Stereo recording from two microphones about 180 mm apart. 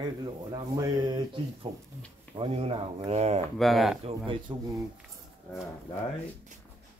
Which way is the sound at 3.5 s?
Centre (ahead or behind).